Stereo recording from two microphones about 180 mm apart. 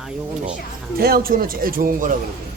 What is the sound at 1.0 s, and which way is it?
Speech, 55° right (ahead or behind).